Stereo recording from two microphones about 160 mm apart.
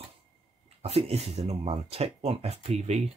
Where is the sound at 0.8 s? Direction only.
40° right (ahead or behind).